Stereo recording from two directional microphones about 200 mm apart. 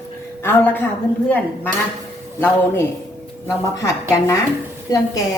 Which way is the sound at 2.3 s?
10° left (ahead or behind).